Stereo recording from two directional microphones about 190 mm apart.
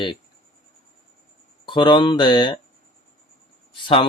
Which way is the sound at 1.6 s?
25° left (ahead or behind).